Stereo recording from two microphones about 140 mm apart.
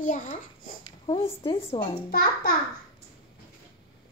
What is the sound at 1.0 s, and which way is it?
Speech, 45° left (ahead or behind).